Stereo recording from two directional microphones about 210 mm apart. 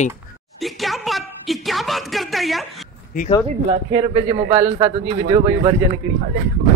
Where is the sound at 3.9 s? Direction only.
30° right (ahead or behind).